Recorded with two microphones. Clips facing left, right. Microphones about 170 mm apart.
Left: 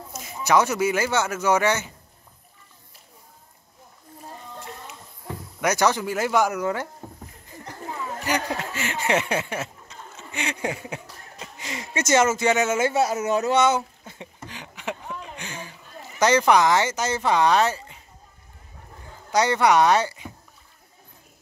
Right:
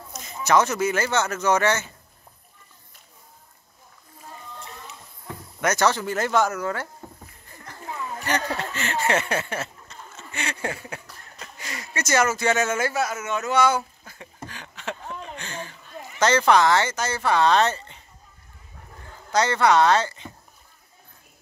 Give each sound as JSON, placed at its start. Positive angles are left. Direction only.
{"t": 0.1, "sound": "speech", "side_deg": 10}
{"t": 5.6, "sound": "speech", "side_deg": 10}
{"t": 7.4, "sound": "a sound", "side_deg": 15}
{"t": 19.0, "sound": "speech", "side_deg": 15}